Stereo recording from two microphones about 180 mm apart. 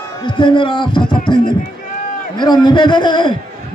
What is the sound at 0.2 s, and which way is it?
A man's voice, 25° left (ahead or behind).